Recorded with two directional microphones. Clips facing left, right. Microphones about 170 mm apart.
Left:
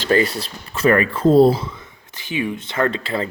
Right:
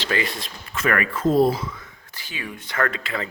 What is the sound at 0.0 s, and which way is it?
Speech, 40° left (ahead or behind).